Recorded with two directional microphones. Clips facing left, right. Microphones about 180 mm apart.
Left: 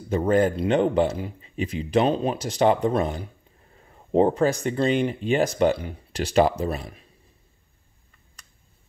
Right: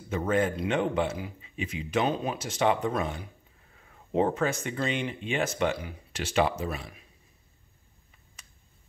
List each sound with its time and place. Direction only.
0.1 s speech: 35° left (ahead or behind)